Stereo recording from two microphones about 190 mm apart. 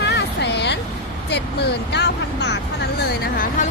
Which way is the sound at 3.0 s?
50° left (ahead or behind).